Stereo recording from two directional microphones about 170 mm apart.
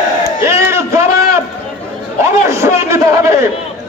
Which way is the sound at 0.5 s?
15° right (ahead or behind).